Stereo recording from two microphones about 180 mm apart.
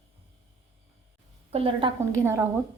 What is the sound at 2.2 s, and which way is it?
Speech, 15° right (ahead or behind).